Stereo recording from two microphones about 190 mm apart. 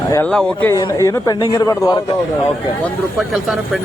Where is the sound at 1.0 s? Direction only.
20° left (ahead or behind).